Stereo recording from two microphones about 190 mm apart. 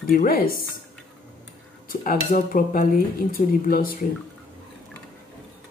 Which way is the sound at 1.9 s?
50° left (ahead or behind).